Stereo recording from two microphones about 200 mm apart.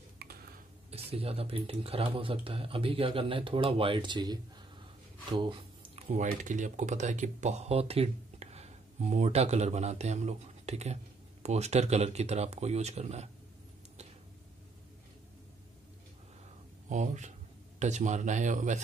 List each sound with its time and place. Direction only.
0.2 s a sound: 50° right (ahead or behind)
0.9 s speech: 30° right (ahead or behind)
16.9 s speech: 35° right (ahead or behind)